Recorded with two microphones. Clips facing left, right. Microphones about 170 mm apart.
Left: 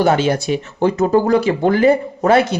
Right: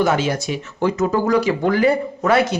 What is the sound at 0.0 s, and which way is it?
Speech, 30° left (ahead or behind).